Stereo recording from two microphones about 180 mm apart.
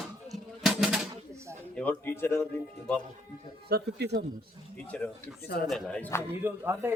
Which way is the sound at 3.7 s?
65° right (ahead or behind).